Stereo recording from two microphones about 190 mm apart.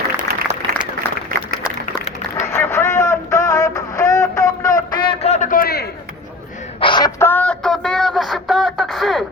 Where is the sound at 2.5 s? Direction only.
10° left (ahead or behind); by 5.9 s 55° left (ahead or behind).